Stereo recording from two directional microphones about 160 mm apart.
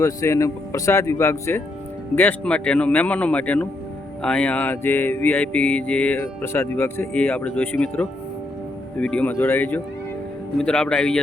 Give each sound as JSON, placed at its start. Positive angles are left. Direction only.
{"t": 0.0, "sound": "mantra", "side_deg": 20}
{"t": 10.6, "sound": "speech", "side_deg": 5}